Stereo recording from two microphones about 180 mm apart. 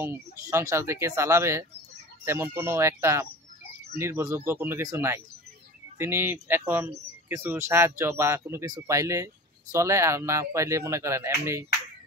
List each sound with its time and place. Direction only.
0.0 s speech: 15° right (ahead or behind)